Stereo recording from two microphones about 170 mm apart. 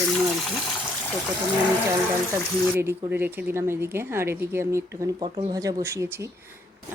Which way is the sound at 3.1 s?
10° right (ahead or behind).